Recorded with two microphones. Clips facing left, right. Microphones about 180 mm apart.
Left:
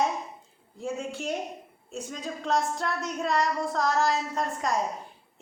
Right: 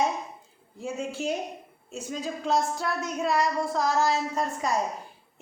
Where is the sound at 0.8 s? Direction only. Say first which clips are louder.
Right 1 dB; centre (ahead or behind).